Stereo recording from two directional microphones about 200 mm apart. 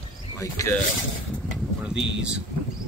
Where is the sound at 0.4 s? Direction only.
15° left (ahead or behind).